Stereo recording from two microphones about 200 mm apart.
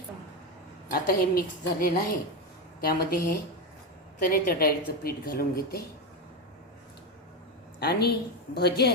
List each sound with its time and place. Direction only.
0.9 s a woman's voice: 45° left (ahead or behind)
7.8 s a woman's voice: 55° left (ahead or behind)